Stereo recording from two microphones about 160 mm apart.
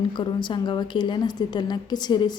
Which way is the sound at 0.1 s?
30° left (ahead or behind).